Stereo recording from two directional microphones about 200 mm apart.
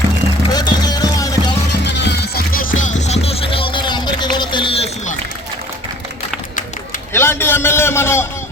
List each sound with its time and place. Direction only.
0.5 s music: 20° left (ahead or behind)
1.8 s music: 60° left (ahead or behind); by 5.1 s 30° left (ahead or behind)
7.1 s a sound: 10° left (ahead or behind)